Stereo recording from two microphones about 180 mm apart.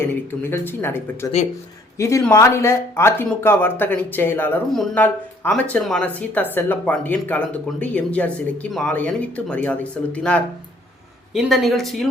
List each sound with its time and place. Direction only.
0.0 s a woman's voice: 10° left (ahead or behind)